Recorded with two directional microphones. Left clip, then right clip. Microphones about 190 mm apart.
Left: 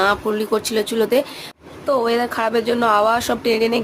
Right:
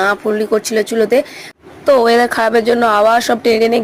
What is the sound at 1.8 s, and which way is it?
Speech, 30° right (ahead or behind).